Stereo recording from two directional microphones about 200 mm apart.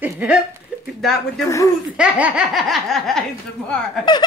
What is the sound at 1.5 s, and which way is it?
Speech, 15° left (ahead or behind).